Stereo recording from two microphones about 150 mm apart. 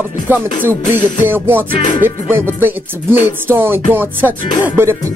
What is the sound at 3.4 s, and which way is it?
Music, 15° right (ahead or behind).